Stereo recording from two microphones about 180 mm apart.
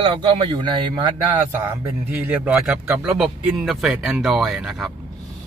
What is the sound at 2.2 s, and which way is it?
Speech, 5° right (ahead or behind).